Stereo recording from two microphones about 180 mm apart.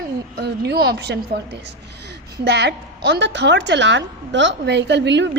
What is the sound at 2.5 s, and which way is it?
A woman's voice, 70° right (ahead or behind).